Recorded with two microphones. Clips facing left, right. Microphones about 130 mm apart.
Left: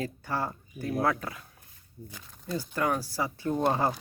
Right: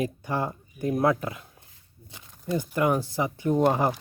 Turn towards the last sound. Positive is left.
turn(degrees=-15)  # may be behind; listen again after turning